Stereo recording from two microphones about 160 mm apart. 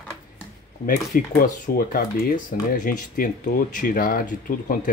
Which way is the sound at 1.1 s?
60° left (ahead or behind).